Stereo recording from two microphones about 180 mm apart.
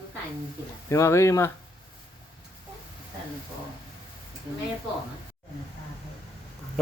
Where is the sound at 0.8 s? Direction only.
15° left (ahead or behind).